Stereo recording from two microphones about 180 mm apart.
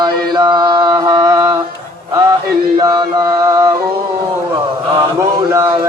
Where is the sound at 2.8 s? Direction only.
20° right (ahead or behind).